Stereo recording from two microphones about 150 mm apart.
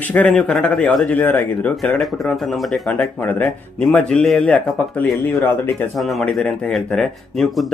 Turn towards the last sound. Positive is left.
turn(degrees=5)  # may be behind; listen again after turning